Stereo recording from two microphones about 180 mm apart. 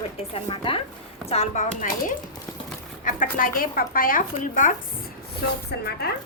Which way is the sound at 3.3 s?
50° left (ahead or behind).